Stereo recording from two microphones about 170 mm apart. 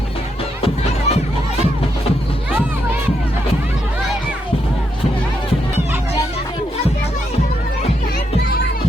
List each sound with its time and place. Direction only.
0.6 s music: 40° left (ahead or behind)
8.4 s music: 65° left (ahead or behind)